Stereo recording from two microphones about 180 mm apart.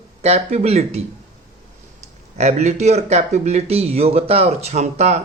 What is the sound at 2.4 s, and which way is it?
Speech, 40° right (ahead or behind).